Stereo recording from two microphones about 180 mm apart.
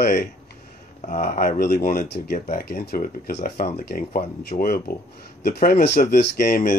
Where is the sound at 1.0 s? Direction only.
40° left (ahead or behind).